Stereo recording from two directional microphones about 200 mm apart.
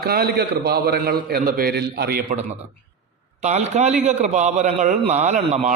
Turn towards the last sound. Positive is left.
turn(degrees=-35)  # may be behind; listen again after turning